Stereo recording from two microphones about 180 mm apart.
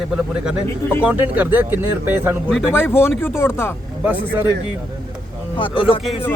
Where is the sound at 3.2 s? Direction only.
15° left (ahead or behind).